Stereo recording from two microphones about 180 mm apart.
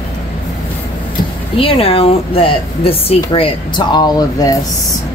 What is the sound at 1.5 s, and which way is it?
Speech, 30° left (ahead or behind).